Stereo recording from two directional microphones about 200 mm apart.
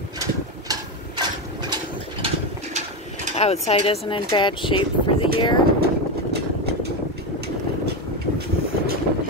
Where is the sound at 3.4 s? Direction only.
30° left (ahead or behind).